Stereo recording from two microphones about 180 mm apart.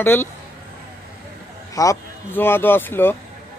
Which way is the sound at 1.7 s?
15° left (ahead or behind).